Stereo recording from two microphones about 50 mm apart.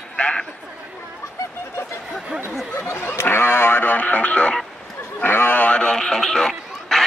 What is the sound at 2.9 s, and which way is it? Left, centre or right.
Speech, left.